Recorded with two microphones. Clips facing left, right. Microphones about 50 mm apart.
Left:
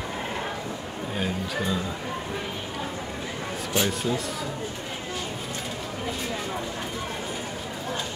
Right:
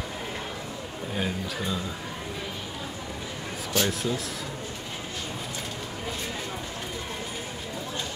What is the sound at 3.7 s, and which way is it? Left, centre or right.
Speech, centre.